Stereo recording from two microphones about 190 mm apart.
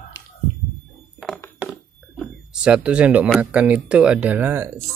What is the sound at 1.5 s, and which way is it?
Speech, centre (ahead or behind).